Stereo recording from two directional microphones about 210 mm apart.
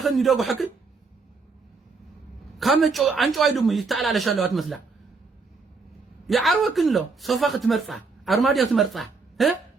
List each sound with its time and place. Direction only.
0.0 s speech: centre (ahead or behind)
2.6 s speech: centre (ahead or behind)
6.2 s speech: centre (ahead or behind)